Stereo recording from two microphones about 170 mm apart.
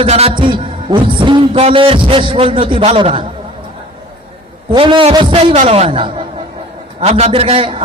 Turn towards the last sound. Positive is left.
turn(degrees=-35)  # may be behind; listen again after turning